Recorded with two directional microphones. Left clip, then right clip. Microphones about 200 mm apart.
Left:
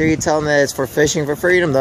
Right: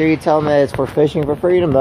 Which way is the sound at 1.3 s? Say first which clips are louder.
Even; 25° left (ahead or behind).